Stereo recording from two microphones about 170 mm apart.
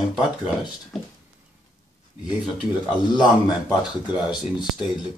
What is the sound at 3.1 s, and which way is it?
Speech, 25° left (ahead or behind).